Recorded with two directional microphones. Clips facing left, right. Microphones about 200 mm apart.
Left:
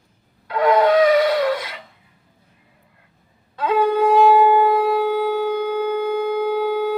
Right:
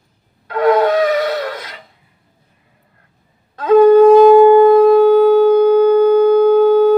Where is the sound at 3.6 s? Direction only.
45° right (ahead or behind).